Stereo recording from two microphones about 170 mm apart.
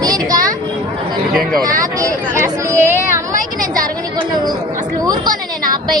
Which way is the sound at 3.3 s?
55° right (ahead or behind).